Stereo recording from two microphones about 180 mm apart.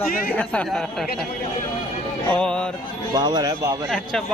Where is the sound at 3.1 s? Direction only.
25° right (ahead or behind).